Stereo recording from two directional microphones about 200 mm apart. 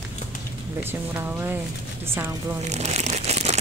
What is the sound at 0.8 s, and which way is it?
Speech, 10° right (ahead or behind).